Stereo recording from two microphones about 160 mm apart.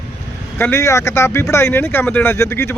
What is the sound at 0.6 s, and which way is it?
Speech, 15° left (ahead or behind).